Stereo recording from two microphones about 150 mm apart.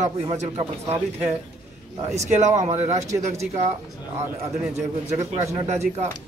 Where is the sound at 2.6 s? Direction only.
45° right (ahead or behind).